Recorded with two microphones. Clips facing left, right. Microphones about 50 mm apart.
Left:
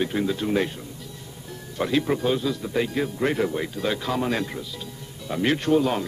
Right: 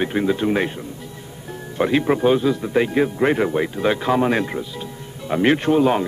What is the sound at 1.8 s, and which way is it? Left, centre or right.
A man's voice, right.